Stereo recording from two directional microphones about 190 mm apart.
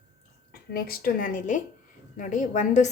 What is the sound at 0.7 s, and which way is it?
A woman's voice, 50° left (ahead or behind).